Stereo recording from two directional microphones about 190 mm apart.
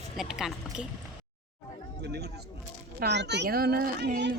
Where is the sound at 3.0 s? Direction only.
65° right (ahead or behind).